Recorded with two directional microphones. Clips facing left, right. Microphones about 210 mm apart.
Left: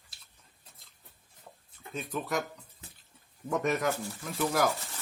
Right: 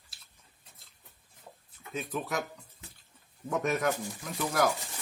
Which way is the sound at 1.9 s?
Centre (ahead or behind).